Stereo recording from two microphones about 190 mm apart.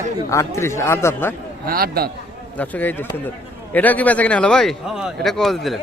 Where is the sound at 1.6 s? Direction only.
50° right (ahead or behind).